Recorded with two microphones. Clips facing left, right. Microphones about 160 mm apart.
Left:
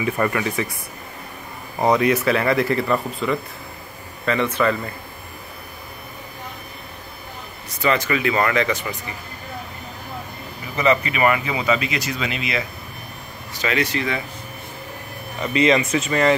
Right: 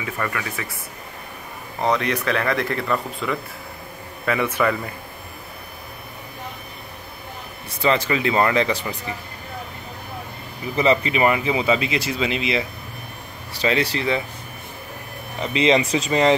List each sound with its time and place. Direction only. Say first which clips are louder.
0.0 s speech: left 6 dB; 25° left (ahead or behind)
1.8 s speech: left 4 dB; 10° left (ahead or behind)
4.3 s speech: left 1 dB; 10° right (ahead or behind)
7.8 s speech: even; 25° right (ahead or behind)
10.8 s speech: even; 30° right (ahead or behind)
15.4 s speech: left 1 dB; 20° right (ahead or behind)
16.1 s speech: right 1 dB; 20° right (ahead or behind)